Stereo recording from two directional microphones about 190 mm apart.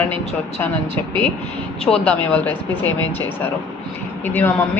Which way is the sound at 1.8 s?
5° left (ahead or behind).